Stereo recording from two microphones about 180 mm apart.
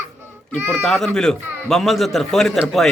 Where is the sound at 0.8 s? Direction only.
5° left (ahead or behind).